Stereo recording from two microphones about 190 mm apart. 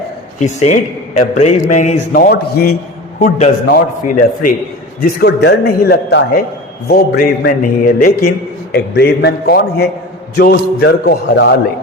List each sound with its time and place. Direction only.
0.3 s a man's voice: 40° left (ahead or behind); by 2.7 s 55° left (ahead or behind)
3.2 s a man's voice: 40° left (ahead or behind)
5.2 s a man's voice: 60° left (ahead or behind)
8.7 s a man's voice: 60° left (ahead or behind)